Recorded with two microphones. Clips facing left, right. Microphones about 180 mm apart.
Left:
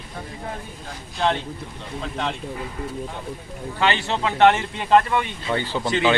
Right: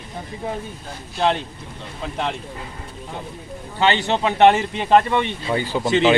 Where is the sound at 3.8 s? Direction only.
25° right (ahead or behind).